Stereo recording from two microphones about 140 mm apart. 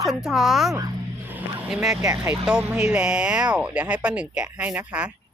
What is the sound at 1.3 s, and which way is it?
Vehicle, 10° right (ahead or behind).